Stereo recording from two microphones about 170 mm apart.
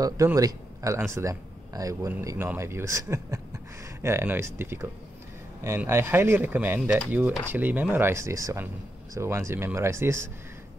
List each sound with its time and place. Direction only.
0.0 s speech: 20° right (ahead or behind)